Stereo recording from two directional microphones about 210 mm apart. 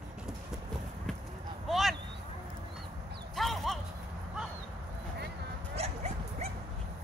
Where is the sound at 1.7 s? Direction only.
Centre (ahead or behind).